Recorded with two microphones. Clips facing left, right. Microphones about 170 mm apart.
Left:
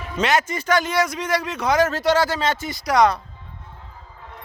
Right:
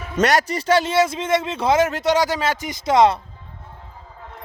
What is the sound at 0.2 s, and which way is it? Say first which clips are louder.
A man's voice: right 3 dB; 40° right (ahead or behind).